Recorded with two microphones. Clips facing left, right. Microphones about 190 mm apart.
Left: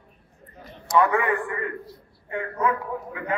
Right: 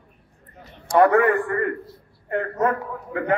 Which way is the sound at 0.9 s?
50° right (ahead or behind).